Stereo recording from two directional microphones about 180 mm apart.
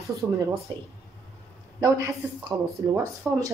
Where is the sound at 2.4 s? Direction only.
20° right (ahead or behind).